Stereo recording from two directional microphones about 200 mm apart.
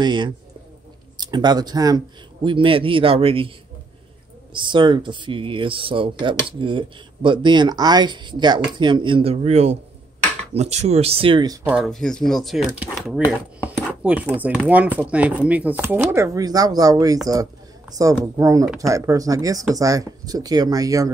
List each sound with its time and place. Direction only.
0.0 s speech: 25° right (ahead or behind)
4.6 s speech: 25° right (ahead or behind)
11.6 s speech: centre (ahead or behind); by 21.1 s 15° right (ahead or behind)